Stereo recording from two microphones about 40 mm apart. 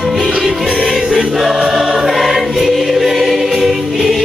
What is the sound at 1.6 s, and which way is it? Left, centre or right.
Choir, centre.